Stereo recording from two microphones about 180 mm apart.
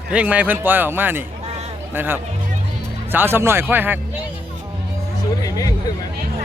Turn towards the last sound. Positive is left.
turn(degrees=20)  # may be behind; listen again after turning